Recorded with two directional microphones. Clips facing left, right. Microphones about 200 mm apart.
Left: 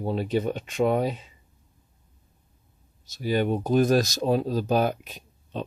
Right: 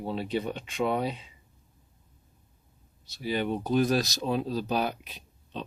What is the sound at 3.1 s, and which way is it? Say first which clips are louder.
Speech: left 5 dB; 45° left (ahead or behind).